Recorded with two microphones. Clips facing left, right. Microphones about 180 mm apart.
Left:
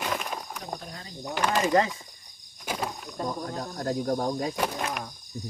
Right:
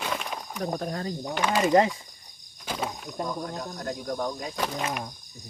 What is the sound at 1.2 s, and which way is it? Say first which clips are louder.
Speech: even; 5° right (ahead or behind).